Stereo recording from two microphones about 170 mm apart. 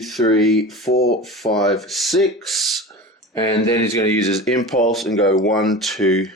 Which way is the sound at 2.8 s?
20° left (ahead or behind).